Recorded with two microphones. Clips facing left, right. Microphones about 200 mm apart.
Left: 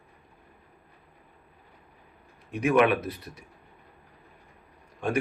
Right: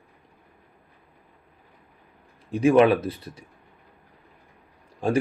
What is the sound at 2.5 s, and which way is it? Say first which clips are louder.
Speech: right 5 dB; 30° right (ahead or behind).